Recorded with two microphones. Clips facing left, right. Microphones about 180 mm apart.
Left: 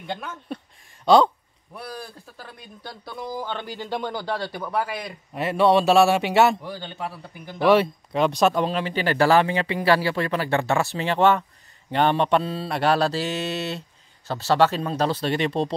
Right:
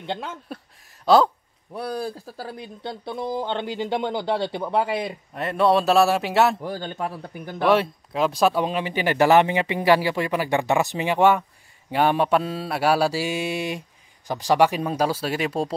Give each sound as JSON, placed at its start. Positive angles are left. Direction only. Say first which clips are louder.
{"t": 0.0, "sound": "speech", "louder": "right 2 dB", "side_deg": -25}
{"t": 1.0, "sound": "speech", "louder": "even", "side_deg": 0}
{"t": 1.8, "sound": "speech", "louder": "right 8 dB", "side_deg": -35}
{"t": 2.8, "sound": "speech", "louder": "right 5 dB", "side_deg": -25}
{"t": 5.3, "sound": "a man's voice", "louder": "left 1 dB", "side_deg": 5}
{"t": 6.6, "sound": "a man's voice", "louder": "right 4 dB", "side_deg": -45}
{"t": 7.6, "sound": "a man's voice", "louder": "left 2 dB", "side_deg": 0}
{"t": 8.6, "sound": "mantra", "louder": "even", "side_deg": -15}